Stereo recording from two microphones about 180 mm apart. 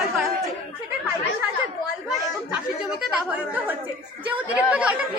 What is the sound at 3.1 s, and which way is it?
Speech, 5° right (ahead or behind).